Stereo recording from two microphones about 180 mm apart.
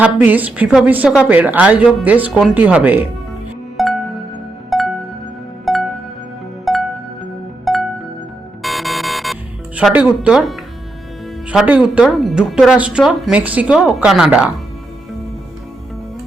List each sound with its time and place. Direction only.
0.0 s a woman's voice: 10° right (ahead or behind)
3.8 s music: centre (ahead or behind)
11.4 s speech: 10° right (ahead or behind)